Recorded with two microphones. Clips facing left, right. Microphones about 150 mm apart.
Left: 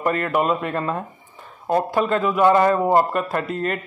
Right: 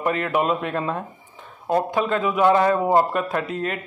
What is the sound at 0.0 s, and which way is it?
A man's voice, centre (ahead or behind).